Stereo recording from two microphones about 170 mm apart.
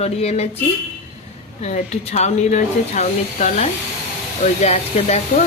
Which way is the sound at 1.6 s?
40° left (ahead or behind).